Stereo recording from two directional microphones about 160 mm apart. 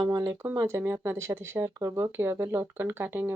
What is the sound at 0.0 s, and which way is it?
Speech, 25° right (ahead or behind).